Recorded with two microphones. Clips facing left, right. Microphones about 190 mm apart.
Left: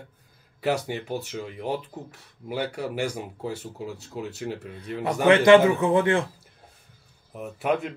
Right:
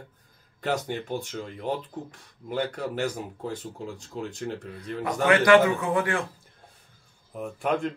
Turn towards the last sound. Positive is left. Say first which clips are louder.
# left 1 dB
turn(degrees=5)  # may be behind; listen again after turning